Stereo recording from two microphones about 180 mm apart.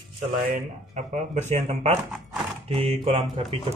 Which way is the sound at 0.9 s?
40° right (ahead or behind).